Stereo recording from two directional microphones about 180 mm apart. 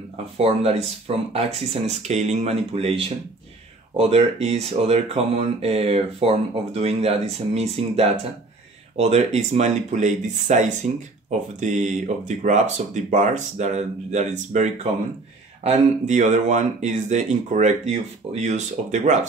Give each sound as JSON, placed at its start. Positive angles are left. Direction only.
{"t": 0.4, "sound": "speech", "side_deg": -35}